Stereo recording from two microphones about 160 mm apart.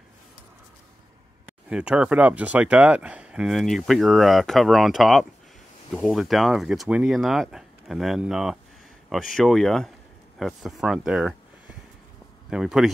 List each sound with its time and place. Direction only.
1.7 s speech: 5° right (ahead or behind)
12.4 s speech: 5° right (ahead or behind)